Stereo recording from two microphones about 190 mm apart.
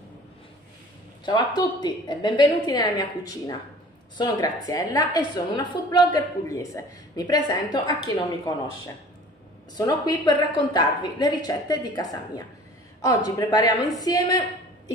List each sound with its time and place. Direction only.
1.2 s a woman's voice: 20° left (ahead or behind)